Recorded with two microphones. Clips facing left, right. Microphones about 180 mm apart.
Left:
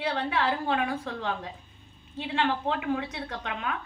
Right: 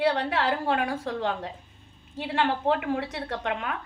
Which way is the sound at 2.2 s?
45° right (ahead or behind).